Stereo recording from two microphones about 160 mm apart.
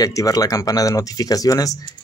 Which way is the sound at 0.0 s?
20° left (ahead or behind).